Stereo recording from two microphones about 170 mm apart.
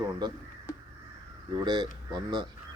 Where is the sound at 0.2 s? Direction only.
25° right (ahead or behind).